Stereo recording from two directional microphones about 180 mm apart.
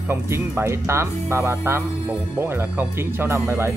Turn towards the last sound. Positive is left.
turn(degrees=-15)  # may be behind; listen again after turning